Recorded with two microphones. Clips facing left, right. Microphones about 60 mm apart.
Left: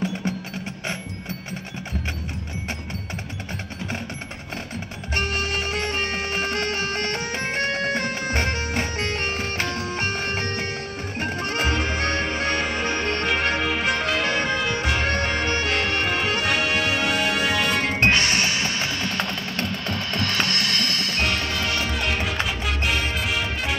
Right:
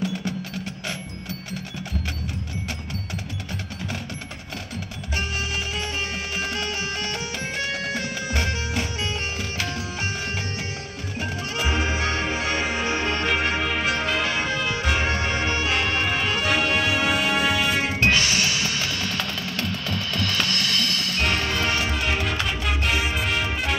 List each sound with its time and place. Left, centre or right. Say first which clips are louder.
5.1 s music: left 3 dB; left
12.4 s music: left 1 dB; centre
18.0 s music: left 1 dB; left
19.1 s music: left 2 dB; left
21.5 s music: right 1 dB; centre